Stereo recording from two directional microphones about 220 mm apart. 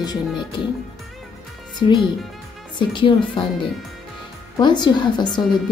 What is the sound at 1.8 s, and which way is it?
Speech, 25° left (ahead or behind).